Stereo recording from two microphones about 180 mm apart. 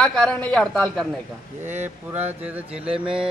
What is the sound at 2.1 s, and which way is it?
Mantra, 10° right (ahead or behind).